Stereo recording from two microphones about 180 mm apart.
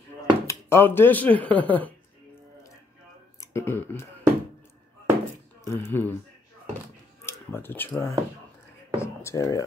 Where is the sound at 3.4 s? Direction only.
15° left (ahead or behind).